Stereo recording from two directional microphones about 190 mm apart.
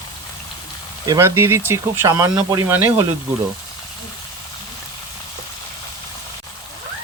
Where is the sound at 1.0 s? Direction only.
15° right (ahead or behind).